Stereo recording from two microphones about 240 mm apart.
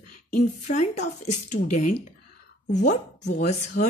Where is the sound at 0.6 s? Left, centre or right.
Left.